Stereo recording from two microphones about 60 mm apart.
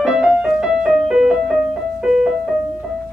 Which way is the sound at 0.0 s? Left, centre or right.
Centre.